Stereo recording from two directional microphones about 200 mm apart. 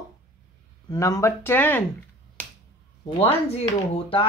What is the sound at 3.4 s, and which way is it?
Speech, 30° left (ahead or behind).